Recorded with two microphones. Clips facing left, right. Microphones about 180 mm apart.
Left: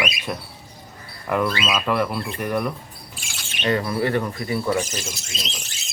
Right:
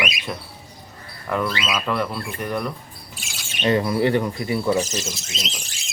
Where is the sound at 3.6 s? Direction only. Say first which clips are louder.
Right 3 dB; 20° right (ahead or behind).